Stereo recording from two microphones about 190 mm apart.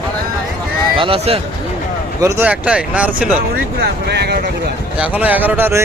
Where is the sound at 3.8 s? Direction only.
60° right (ahead or behind).